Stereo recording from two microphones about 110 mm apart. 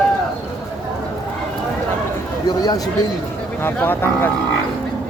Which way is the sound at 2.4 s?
35° left (ahead or behind).